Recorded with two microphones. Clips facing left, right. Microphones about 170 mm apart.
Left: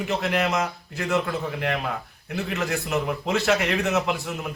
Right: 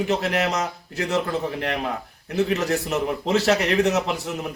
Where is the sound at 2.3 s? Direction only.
40° right (ahead or behind).